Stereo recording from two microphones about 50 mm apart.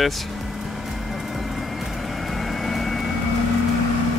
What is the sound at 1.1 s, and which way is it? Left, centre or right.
Vehicle, centre.